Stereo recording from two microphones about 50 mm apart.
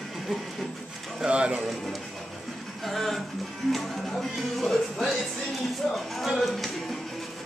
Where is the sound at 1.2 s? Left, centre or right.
Right.